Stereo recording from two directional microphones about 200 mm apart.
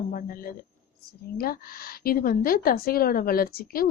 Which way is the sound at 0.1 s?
45° left (ahead or behind).